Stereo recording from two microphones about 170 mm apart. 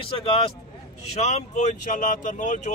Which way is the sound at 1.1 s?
40° left (ahead or behind).